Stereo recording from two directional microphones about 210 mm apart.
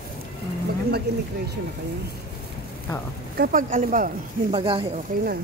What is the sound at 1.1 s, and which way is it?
Speech, 50° right (ahead or behind).